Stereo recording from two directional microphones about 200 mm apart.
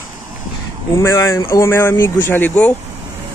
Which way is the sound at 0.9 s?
15° left (ahead or behind).